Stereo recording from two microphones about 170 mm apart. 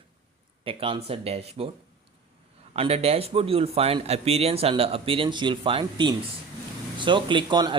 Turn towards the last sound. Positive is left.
turn(degrees=-25)  # may be behind; listen again after turning